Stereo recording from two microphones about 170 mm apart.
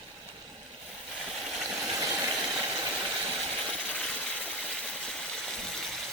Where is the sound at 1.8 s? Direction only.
Centre (ahead or behind).